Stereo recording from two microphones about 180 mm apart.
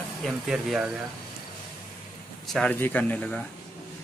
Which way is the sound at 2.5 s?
5° left (ahead or behind).